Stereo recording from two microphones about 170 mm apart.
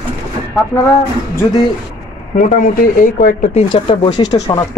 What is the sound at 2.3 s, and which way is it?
Speech, 50° left (ahead or behind).